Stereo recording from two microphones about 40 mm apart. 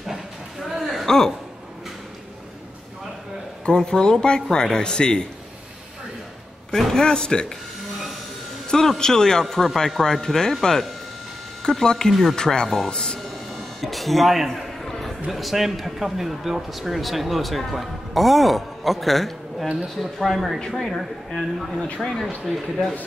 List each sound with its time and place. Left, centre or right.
0.0 s a sound: centre
1.0 s speech: centre
3.6 s speech: left
6.7 s a sound: centre
7.0 s speech: centre
8.6 s speech: centre
12.9 s speech: centre
13.3 s a sound: centre
15.3 s speech: centre
21.9 s speech: left
22.5 s speech: centre